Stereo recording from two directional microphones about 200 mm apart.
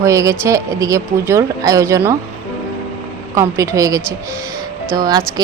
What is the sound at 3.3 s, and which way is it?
A woman's voice, 15° right (ahead or behind).